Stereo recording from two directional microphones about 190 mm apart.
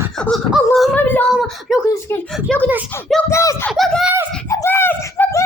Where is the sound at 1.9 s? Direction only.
10° left (ahead or behind).